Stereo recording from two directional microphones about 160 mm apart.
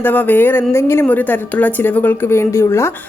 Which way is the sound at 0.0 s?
10° left (ahead or behind).